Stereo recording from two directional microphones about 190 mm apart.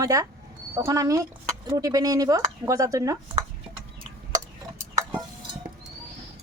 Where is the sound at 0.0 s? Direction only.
15° right (ahead or behind).